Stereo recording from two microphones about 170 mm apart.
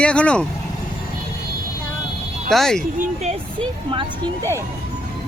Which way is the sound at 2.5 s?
5° left (ahead or behind).